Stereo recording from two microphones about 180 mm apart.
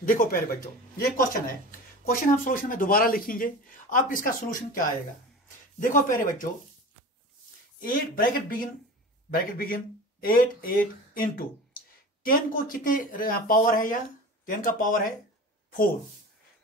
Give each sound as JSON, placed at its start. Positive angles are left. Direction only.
{"t": 0.0, "sound": "speech", "side_deg": 50}
{"t": 7.8, "sound": "speech", "side_deg": 50}